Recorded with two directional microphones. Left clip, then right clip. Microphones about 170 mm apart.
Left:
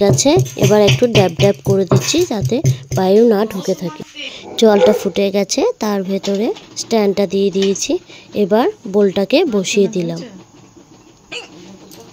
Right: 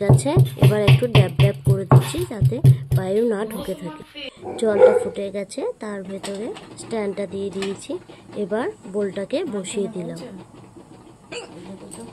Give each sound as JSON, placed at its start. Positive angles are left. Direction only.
{"t": 0.2, "sound": "a woman's voice", "side_deg": 45}
{"t": 4.6, "sound": "a woman's voice", "side_deg": 50}